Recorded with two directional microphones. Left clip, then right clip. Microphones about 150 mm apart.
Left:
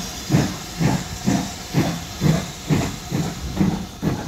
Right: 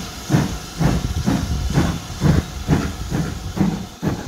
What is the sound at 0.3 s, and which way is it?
Hiss, 40° right (ahead or behind).